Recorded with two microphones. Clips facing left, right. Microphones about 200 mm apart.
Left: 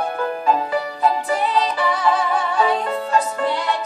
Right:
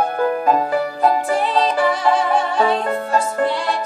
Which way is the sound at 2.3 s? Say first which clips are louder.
Right 2 dB; 30° right (ahead or behind).